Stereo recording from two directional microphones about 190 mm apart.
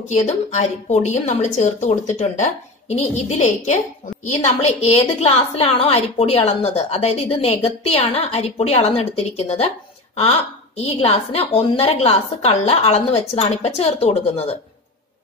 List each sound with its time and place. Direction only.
0.1 s a woman's voice: 40° left (ahead or behind)